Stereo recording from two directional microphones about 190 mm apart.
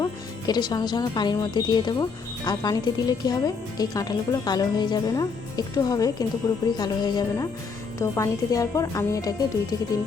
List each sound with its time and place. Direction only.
0.0 s speech: 20° left (ahead or behind)